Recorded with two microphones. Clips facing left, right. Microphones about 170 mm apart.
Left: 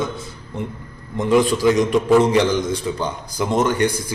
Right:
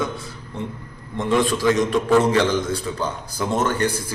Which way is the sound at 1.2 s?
20° left (ahead or behind).